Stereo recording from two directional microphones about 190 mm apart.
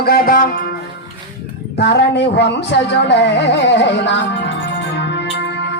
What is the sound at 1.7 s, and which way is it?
Speech, 60° left (ahead or behind).